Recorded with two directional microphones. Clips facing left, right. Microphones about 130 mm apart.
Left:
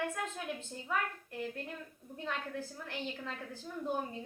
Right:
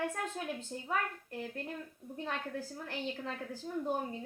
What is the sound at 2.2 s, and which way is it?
A woman's voice, 35° right (ahead or behind).